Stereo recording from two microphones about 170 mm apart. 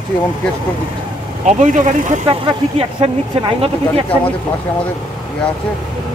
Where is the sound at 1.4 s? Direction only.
45° right (ahead or behind).